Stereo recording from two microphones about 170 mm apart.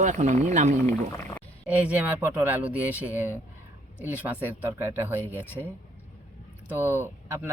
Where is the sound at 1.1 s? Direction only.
15° left (ahead or behind).